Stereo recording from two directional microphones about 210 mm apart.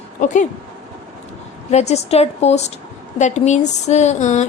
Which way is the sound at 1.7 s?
30° left (ahead or behind).